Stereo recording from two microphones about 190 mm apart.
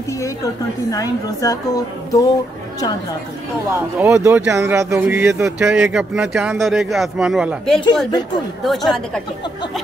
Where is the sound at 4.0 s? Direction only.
10° right (ahead or behind).